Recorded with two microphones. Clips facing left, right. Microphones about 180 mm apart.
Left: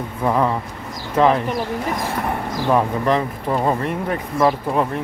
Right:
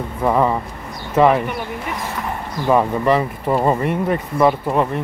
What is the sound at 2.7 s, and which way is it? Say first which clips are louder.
Speech: right 2 dB; 5° right (ahead or behind).